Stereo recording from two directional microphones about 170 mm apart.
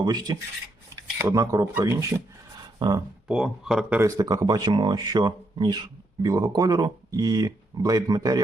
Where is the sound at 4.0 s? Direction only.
20° right (ahead or behind).